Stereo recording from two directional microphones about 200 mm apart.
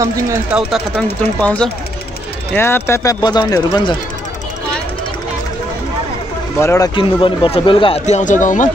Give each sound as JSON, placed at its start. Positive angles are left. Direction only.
{"t": 0.0, "sound": "speech", "side_deg": -15}
{"t": 0.5, "sound": "speech", "side_deg": -5}
{"t": 1.4, "sound": "speech", "side_deg": 5}
{"t": 6.6, "sound": "speech", "side_deg": 15}
{"t": 7.0, "sound": "speech", "side_deg": 25}
{"t": 8.1, "sound": "speech", "side_deg": 40}